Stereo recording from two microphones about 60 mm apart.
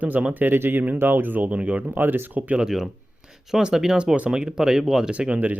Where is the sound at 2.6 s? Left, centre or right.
Centre.